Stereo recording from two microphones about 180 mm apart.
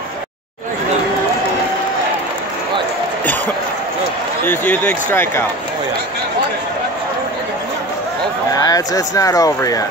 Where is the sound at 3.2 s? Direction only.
10° left (ahead or behind).